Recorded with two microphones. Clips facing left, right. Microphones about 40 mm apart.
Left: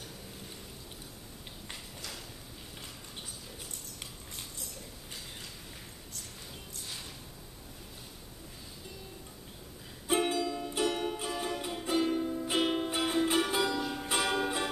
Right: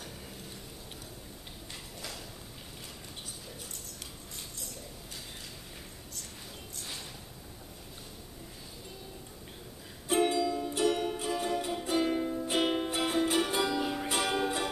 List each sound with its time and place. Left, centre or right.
2.0 s a sound: centre
10.0 s music: centre
13.7 s music: centre
14.0 s music: centre